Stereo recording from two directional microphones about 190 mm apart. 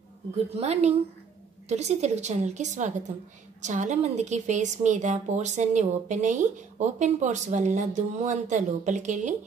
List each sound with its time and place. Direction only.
0.6 s a woman's voice: 35° right (ahead or behind)